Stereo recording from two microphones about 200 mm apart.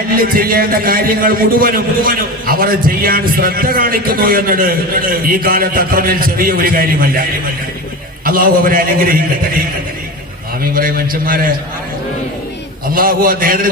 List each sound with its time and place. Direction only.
0.2 s a man's voice: 45° right (ahead or behind)
8.2 s a man's voice: 45° right (ahead or behind)
10.6 s a man's voice: 45° right (ahead or behind)
12.9 s a man's voice: 45° right (ahead or behind)